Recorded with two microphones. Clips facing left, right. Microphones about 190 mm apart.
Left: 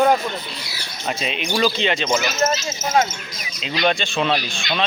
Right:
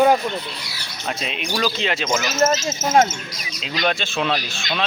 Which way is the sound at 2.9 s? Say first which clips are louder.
Right 3 dB; 45° right (ahead or behind).